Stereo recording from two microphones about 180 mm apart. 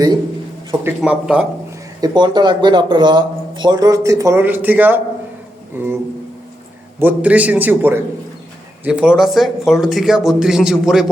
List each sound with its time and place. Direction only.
0.9 s a man's voice: 5° right (ahead or behind)
2.0 s speech: 25° right (ahead or behind)
7.0 s a man's voice: 10° right (ahead or behind)